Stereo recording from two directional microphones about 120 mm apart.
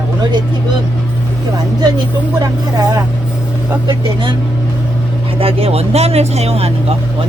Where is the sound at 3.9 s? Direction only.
40° right (ahead or behind).